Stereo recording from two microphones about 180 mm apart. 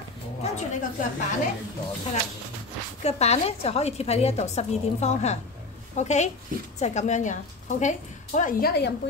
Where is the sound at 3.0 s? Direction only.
35° left (ahead or behind); by 9.1 s 70° left (ahead or behind).